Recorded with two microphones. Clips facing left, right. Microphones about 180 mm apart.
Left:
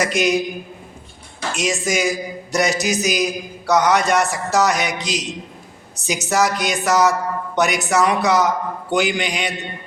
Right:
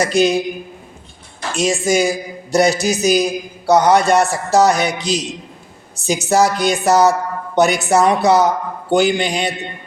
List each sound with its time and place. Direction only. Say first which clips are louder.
0.0 s speech: right 4 dB; 30° right (ahead or behind)
1.5 s speech: right 6 dB; 30° right (ahead or behind)